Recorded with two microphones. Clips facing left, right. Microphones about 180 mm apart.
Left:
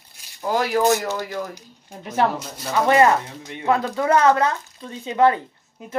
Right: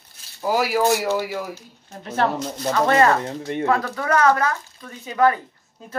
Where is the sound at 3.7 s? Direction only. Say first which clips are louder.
Left 4 dB; 20° left (ahead or behind).